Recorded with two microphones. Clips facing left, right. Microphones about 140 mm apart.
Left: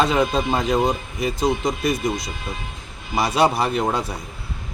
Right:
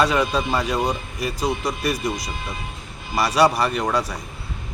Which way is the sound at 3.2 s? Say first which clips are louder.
Right 1 dB; 25° left (ahead or behind).